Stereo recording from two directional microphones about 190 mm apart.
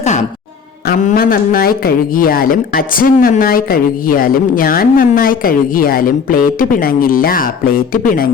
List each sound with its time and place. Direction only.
0.0 s speech: 35° left (ahead or behind)